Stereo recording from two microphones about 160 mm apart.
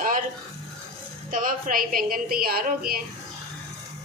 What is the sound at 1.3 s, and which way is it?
A woman's voice, 60° right (ahead or behind).